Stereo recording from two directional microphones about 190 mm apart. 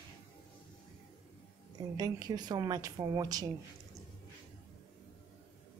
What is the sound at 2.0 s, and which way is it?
Speech, 20° right (ahead or behind).